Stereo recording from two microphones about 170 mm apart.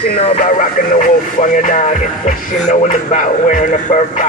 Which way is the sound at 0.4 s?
50° left (ahead or behind).